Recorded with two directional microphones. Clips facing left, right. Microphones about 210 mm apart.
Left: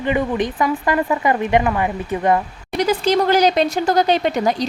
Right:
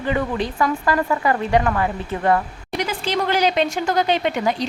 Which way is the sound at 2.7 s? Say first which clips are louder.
Left 6 dB; 40° left (ahead or behind).